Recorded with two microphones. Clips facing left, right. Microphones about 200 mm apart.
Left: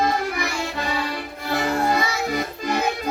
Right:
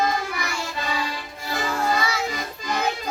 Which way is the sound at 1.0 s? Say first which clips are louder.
Left 4 dB; 60° left (ahead or behind).